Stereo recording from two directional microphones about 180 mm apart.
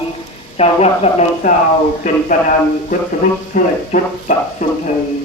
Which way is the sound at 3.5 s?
45° left (ahead or behind).